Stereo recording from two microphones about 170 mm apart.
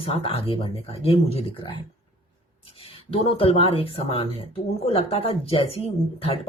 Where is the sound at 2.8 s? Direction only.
35° left (ahead or behind).